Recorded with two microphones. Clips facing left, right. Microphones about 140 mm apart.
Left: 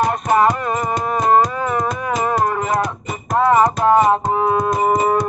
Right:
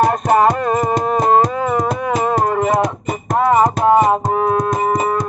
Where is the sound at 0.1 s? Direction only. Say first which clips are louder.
Right 2 dB; 35° right (ahead or behind).